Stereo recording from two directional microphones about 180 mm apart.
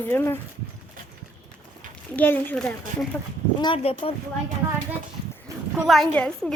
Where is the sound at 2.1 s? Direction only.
10° left (ahead or behind).